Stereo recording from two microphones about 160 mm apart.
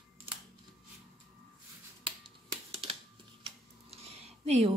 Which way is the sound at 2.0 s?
35° right (ahead or behind).